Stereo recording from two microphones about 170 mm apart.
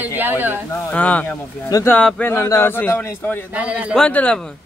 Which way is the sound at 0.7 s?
10° left (ahead or behind).